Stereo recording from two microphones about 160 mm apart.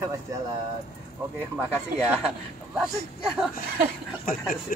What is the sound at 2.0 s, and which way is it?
Speech, 5° right (ahead or behind).